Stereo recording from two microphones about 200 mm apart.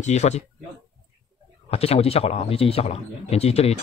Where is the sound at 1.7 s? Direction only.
30° left (ahead or behind).